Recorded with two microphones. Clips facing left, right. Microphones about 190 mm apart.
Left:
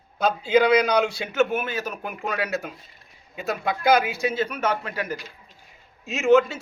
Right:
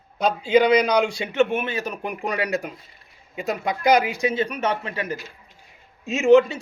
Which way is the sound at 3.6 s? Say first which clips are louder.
Even; 15° right (ahead or behind).